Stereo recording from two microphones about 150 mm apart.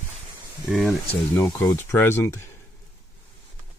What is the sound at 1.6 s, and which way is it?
Speech, 15° left (ahead or behind).